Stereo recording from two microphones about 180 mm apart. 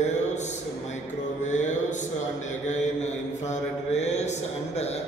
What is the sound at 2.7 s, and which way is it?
Mantra, 40° left (ahead or behind).